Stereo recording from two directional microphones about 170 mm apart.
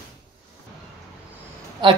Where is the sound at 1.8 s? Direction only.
25° right (ahead or behind).